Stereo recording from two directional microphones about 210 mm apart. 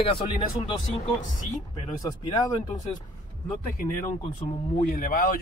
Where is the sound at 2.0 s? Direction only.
15° left (ahead or behind).